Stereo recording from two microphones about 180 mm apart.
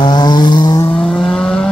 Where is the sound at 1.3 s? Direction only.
5° left (ahead or behind).